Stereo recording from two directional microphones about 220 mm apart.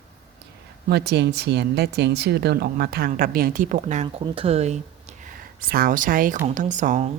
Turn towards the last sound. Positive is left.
turn(degrees=-30)  # may be behind; listen again after turning